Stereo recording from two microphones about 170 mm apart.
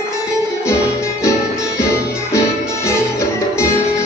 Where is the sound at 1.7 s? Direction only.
15° left (ahead or behind).